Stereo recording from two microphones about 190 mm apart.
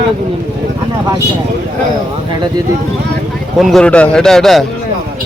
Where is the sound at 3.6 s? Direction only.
Centre (ahead or behind).